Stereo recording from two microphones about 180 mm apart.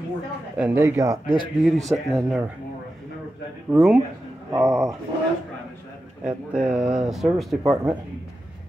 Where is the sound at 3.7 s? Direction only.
Centre (ahead or behind).